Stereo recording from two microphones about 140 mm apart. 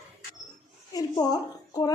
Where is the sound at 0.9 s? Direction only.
25° left (ahead or behind).